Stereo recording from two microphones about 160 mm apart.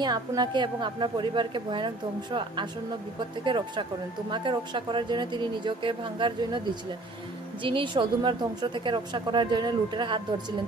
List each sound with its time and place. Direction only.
0.0 s a woman's voice: 25° right (ahead or behind)